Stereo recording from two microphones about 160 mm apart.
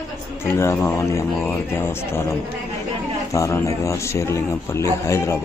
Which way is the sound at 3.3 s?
20° left (ahead or behind).